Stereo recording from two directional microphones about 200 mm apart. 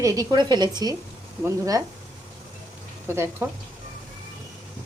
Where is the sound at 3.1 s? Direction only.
10° right (ahead or behind).